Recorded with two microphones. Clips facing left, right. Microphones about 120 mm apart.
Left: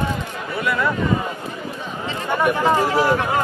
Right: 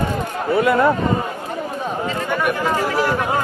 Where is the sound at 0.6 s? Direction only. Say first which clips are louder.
Right 5 dB; 40° right (ahead or behind).